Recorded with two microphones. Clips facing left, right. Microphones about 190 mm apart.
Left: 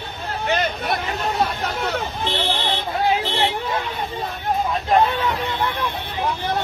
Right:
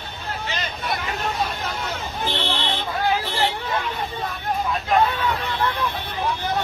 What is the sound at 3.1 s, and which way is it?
Vehicle, 25° left (ahead or behind).